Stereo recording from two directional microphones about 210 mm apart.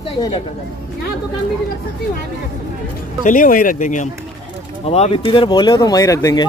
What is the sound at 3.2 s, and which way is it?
Speech, 40° left (ahead or behind).